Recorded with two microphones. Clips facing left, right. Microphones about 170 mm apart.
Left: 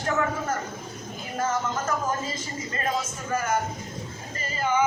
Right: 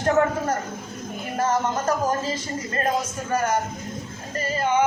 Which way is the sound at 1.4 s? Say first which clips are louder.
Right 4 dB; 35° right (ahead or behind).